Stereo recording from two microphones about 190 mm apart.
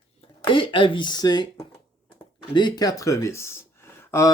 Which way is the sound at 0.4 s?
25° left (ahead or behind).